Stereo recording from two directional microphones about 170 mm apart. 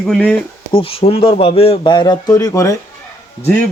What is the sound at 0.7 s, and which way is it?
A man's voice, 35° left (ahead or behind).